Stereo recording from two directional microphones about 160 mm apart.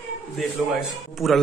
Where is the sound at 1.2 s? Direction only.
Centre (ahead or behind).